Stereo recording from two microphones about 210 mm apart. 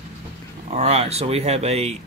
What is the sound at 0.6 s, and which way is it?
Speech, 30° right (ahead or behind).